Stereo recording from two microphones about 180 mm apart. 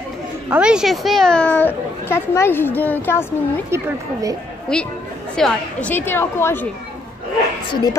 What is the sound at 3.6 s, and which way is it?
Speech, 15° right (ahead or behind).